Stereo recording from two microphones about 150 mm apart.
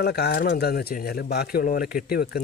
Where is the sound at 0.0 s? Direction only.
90° left.